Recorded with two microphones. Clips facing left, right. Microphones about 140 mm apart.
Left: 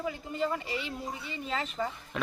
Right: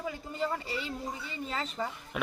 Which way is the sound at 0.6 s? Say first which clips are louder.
Left 1 dB; 35° right (ahead or behind).